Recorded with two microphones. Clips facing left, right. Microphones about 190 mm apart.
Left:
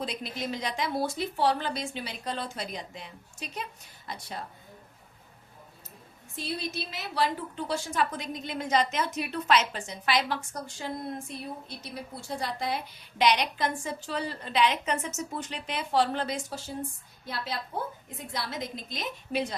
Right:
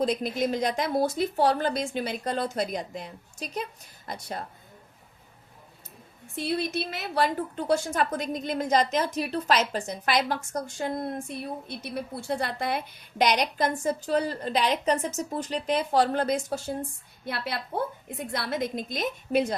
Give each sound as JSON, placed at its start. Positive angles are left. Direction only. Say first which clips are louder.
{"t": 0.0, "sound": "a woman's voice", "louder": "right 9 dB", "side_deg": -45}
{"t": 6.3, "sound": "a woman's voice", "louder": "right 6 dB", "side_deg": -55}
{"t": 17.2, "sound": "a woman's voice", "louder": "right 3 dB", "side_deg": -65}